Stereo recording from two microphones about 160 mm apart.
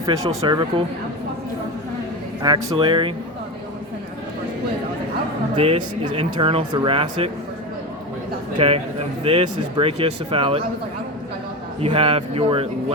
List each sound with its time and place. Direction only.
0.0 s speech: 25° right (ahead or behind)
2.4 s speech: 30° right (ahead or behind)
5.5 s speech: 35° right (ahead or behind)
8.5 s speech: 35° right (ahead or behind)
11.8 s speech: 35° right (ahead or behind)